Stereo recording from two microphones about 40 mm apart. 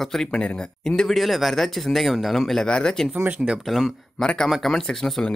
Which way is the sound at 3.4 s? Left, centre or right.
Centre.